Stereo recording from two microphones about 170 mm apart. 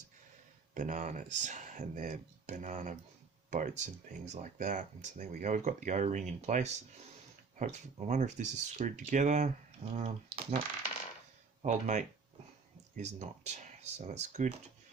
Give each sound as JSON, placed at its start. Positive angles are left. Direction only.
{"t": 0.7, "sound": "speech", "side_deg": -45}
{"t": 11.6, "sound": "speech", "side_deg": -45}